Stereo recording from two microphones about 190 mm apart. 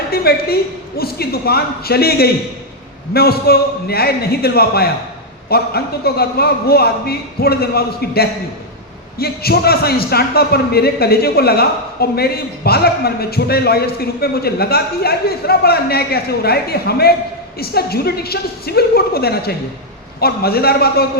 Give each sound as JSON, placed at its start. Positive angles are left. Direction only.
{"t": 0.1, "sound": "a man's voice", "side_deg": 55}